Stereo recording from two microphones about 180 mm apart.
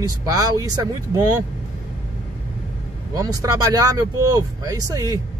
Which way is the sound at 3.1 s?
20° right (ahead or behind).